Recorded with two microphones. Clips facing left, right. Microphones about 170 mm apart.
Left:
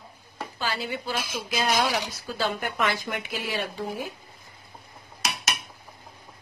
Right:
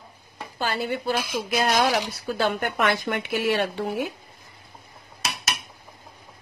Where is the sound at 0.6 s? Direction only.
55° right (ahead or behind).